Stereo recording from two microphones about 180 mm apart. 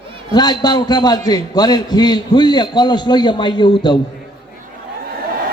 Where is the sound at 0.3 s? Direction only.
25° left (ahead or behind).